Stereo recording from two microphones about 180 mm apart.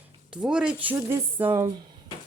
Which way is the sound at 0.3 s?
5° right (ahead or behind).